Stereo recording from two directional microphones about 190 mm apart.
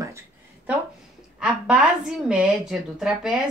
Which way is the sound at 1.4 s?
5° right (ahead or behind).